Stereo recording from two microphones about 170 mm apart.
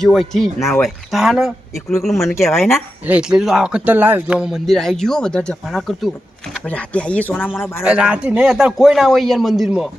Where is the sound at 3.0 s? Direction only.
5° right (ahead or behind); by 7.8 s 15° left (ahead or behind).